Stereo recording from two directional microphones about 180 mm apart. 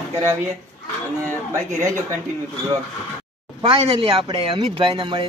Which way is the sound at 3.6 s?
30° right (ahead or behind).